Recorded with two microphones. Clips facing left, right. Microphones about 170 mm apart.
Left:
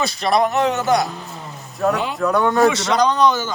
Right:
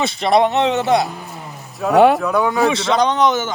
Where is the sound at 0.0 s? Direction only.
25° right (ahead or behind).